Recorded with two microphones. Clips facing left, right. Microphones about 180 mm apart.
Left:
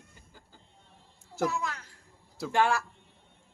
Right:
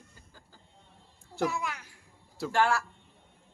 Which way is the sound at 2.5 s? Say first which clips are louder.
Even; 20° left (ahead or behind).